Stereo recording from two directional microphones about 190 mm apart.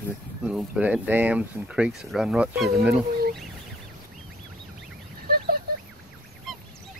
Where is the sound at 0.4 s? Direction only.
5° right (ahead or behind).